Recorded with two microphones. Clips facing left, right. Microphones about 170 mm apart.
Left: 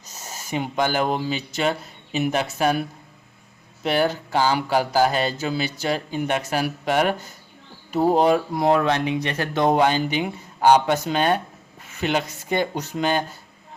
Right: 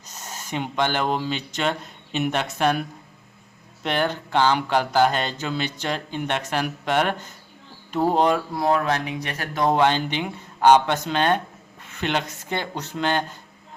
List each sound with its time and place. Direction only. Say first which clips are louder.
0.3 s speech: left 2 dB; 10° left (ahead or behind)
3.8 s speech: left 3 dB; 5° left (ahead or behind)
8.6 s speech: left 2 dB; 25° left (ahead or behind)
9.7 s speech: left 1 dB; 10° left (ahead or behind)